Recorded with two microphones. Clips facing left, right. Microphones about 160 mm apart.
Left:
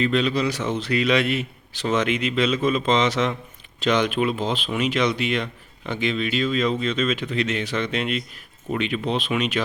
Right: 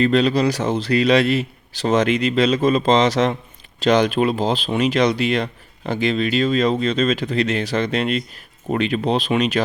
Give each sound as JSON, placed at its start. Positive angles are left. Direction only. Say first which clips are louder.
{"t": 0.0, "sound": "speech", "louder": "right 5 dB", "side_deg": -40}